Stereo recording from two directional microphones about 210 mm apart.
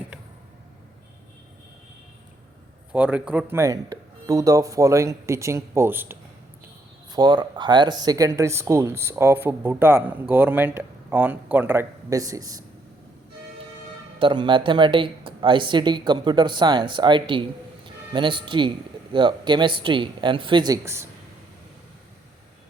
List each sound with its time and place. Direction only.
2.9 s speech: 5° right (ahead or behind)
14.2 s speech: 25° right (ahead or behind)